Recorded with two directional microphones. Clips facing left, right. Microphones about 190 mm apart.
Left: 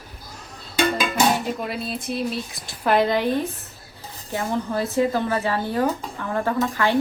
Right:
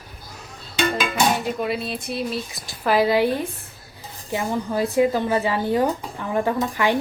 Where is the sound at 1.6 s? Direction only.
Centre (ahead or behind).